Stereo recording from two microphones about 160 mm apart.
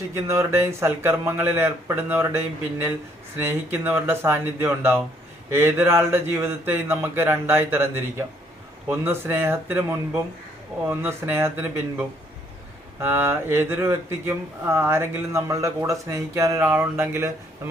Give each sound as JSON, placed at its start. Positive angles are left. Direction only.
{"t": 0.1, "sound": "speech", "side_deg": -15}